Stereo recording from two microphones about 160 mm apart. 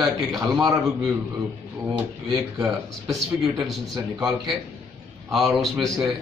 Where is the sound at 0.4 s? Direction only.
20° right (ahead or behind).